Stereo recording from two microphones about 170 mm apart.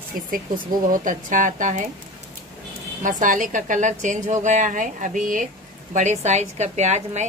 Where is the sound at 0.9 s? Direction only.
50° right (ahead or behind).